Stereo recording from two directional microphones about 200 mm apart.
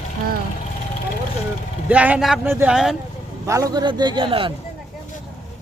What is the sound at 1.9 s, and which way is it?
Speech, 5° right (ahead or behind).